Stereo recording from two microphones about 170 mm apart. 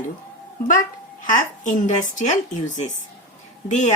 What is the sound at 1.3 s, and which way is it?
Speech, 45° left (ahead or behind).